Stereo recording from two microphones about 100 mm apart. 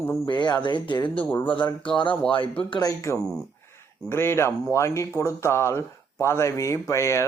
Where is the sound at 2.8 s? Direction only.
30° left (ahead or behind).